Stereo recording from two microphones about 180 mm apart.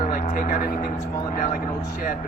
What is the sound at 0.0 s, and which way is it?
Vehicle, 45° left (ahead or behind).